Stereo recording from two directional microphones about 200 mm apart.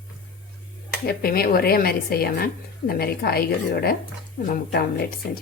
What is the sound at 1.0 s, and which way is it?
Speech, 50° left (ahead or behind).